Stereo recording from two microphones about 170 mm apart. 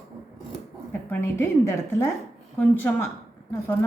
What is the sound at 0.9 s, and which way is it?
A woman's voice, 15° left (ahead or behind).